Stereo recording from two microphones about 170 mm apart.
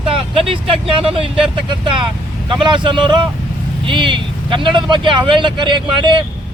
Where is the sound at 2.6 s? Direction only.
25° right (ahead or behind).